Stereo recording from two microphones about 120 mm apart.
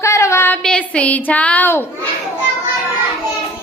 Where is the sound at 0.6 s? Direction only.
10° left (ahead or behind).